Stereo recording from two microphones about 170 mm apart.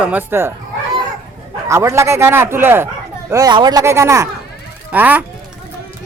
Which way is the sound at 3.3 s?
25° right (ahead or behind).